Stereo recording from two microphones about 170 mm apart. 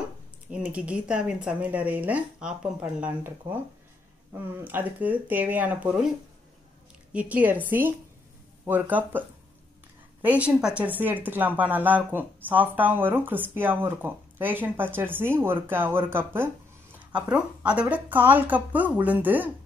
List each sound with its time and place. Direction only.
0.5 s speech: 10° right (ahead or behind)
7.1 s speech: 10° right (ahead or behind)
8.6 s speech: 10° right (ahead or behind)
10.2 s speech: 10° right (ahead or behind)